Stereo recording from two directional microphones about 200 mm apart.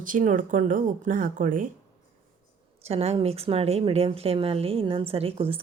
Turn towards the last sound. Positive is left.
turn(degrees=-30)  # may be behind; listen again after turning